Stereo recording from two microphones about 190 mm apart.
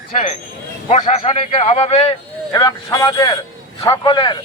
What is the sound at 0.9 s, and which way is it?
A man's voice, 35° left (ahead or behind).